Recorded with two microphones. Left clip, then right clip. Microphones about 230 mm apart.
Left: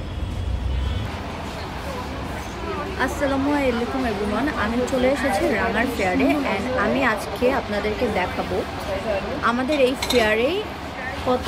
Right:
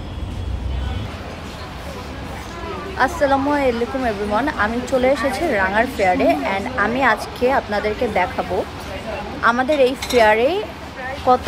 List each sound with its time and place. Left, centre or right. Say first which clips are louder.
3.0 s a woman's voice: right 7 dB; centre
9.4 s a woman's voice: right 6 dB; centre